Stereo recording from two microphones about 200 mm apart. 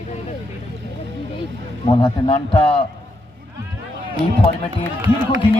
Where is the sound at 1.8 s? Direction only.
25° left (ahead or behind).